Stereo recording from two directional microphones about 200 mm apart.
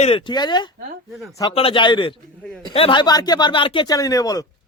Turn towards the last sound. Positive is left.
turn(degrees=15)  # may be behind; listen again after turning